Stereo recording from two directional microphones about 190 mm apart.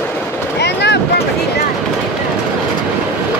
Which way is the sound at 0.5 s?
60° left (ahead or behind).